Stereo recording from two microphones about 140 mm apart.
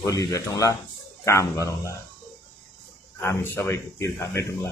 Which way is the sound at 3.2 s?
20° left (ahead or behind).